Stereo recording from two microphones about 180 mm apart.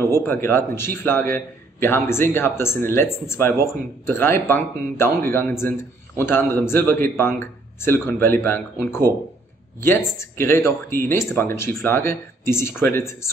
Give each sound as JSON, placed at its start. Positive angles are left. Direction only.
{"t": 0.2, "sound": "a man's voice", "side_deg": 10}